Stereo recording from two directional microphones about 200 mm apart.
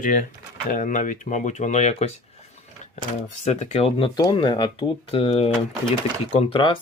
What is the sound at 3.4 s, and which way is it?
Speech, 35° left (ahead or behind).